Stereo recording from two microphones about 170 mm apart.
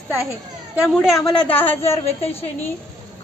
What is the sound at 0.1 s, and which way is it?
Speech, 15° right (ahead or behind).